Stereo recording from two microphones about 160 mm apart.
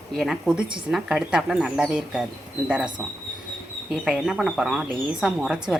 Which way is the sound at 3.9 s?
Centre (ahead or behind).